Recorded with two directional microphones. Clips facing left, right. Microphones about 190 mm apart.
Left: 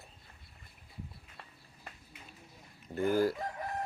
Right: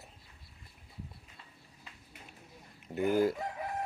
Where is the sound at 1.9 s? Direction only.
55° left (ahead or behind).